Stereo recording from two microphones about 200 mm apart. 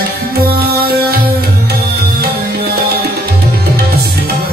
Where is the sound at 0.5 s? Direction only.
50° right (ahead or behind).